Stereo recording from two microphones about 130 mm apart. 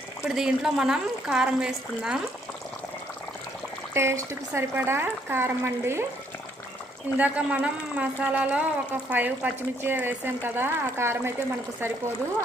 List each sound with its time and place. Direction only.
0.2 s speech: 5° right (ahead or behind)
3.9 s speech: 20° right (ahead or behind)
7.2 s speech: 10° right (ahead or behind)